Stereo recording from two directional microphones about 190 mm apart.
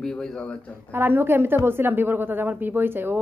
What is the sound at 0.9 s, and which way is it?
A woman's voice, 10° right (ahead or behind).